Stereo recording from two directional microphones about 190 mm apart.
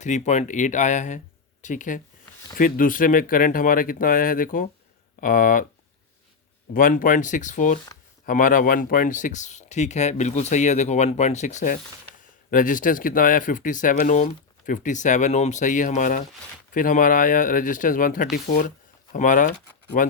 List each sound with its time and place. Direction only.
0.0 s speech: 40° left (ahead or behind)
6.7 s speech: 45° left (ahead or behind)